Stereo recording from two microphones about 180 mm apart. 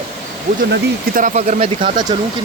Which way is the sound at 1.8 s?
25° right (ahead or behind).